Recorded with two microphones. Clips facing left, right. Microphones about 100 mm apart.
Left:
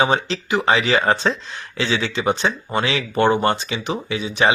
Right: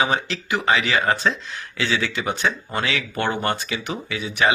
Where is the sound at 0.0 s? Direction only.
30° left (ahead or behind).